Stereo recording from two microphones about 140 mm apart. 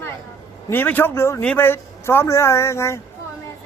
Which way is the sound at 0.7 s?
15° left (ahead or behind).